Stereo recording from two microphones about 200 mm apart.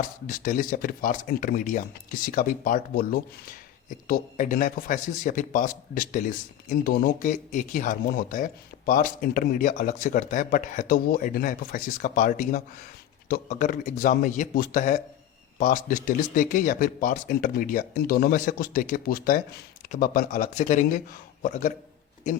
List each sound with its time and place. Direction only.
0.0 s a man's voice: 40° left (ahead or behind)